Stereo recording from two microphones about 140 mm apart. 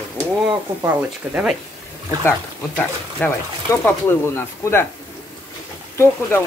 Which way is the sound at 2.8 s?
15° left (ahead or behind).